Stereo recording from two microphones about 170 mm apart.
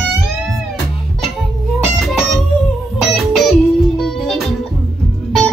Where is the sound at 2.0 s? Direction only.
Centre (ahead or behind).